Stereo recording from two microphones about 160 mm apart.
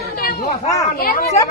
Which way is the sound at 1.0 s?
65° left (ahead or behind).